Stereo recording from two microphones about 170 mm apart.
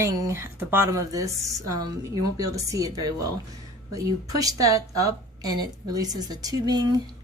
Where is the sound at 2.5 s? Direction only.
20° right (ahead or behind).